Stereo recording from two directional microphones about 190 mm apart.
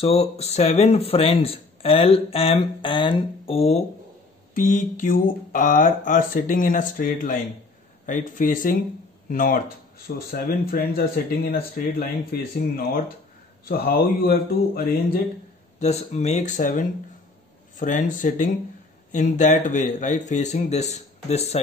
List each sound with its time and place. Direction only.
0.0 s speech: 30° left (ahead or behind)
4.6 s speech: 45° left (ahead or behind)
15.8 s speech: 35° left (ahead or behind)